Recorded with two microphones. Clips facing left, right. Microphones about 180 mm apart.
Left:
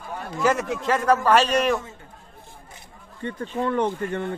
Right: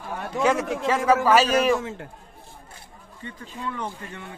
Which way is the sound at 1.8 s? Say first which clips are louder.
Right 8 dB; 90° right.